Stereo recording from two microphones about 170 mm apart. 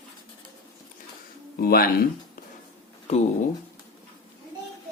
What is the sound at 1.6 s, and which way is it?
Speech, 60° left (ahead or behind).